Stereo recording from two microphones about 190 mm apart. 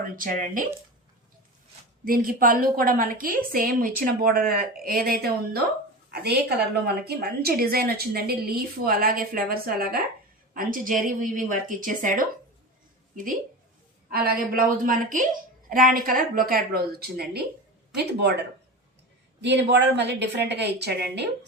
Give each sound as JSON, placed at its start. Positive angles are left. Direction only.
{"t": 0.0, "sound": "a woman's voice", "side_deg": -45}
{"t": 2.0, "sound": "a woman's voice", "side_deg": -50}
{"t": 14.1, "sound": "a woman's voice", "side_deg": -50}
{"t": 19.4, "sound": "speech", "side_deg": -65}